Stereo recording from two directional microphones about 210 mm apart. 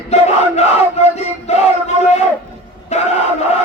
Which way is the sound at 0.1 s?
30° left (ahead or behind).